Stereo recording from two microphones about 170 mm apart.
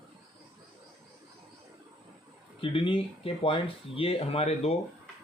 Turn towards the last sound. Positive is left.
turn(degrees=35)  # may be behind; listen again after turning